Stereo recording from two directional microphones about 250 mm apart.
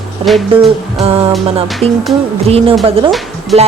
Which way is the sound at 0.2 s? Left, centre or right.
Right.